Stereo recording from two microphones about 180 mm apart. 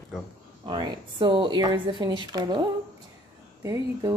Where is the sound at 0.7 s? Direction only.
25° right (ahead or behind).